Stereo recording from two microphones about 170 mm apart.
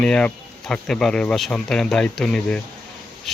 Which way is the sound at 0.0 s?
5° left (ahead or behind).